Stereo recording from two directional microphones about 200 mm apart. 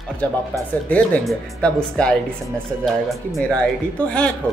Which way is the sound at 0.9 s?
5° left (ahead or behind).